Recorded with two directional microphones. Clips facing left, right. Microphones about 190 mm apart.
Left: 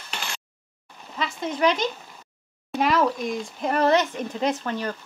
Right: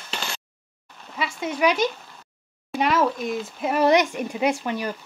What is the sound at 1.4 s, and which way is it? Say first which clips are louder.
Speech: right 1 dB; 10° right (ahead or behind).